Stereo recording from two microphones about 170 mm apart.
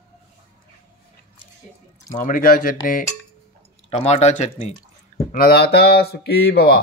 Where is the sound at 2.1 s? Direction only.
55° left (ahead or behind).